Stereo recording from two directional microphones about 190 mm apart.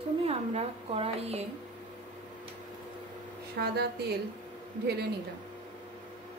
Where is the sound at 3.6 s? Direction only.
60° right (ahead or behind).